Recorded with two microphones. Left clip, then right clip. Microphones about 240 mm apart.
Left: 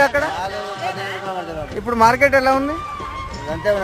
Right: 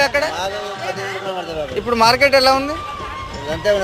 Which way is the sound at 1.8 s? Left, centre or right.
Left.